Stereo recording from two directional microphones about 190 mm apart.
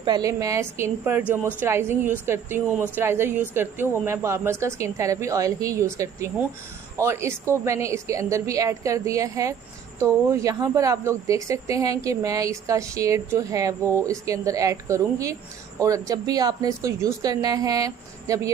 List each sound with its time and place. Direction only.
0.0 s a woman's voice: 20° right (ahead or behind)